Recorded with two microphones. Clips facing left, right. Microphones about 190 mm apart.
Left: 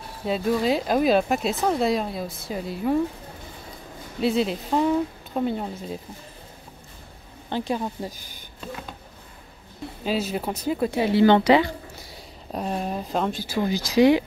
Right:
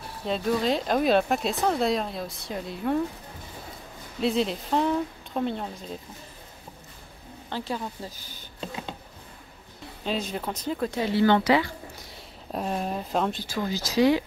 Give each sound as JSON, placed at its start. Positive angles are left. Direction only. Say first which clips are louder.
{"t": 0.2, "sound": "speech", "louder": "left 2 dB", "side_deg": 5}
{"t": 4.2, "sound": "speech", "louder": "left 2 dB", "side_deg": 0}
{"t": 7.4, "sound": "speech", "louder": "left 5 dB", "side_deg": 20}
{"t": 10.0, "sound": "speech", "louder": "left 4 dB", "side_deg": 5}
{"t": 12.5, "sound": "speech", "louder": "left 1 dB", "side_deg": 0}